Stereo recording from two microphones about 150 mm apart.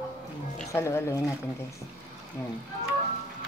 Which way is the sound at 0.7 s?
20° left (ahead or behind).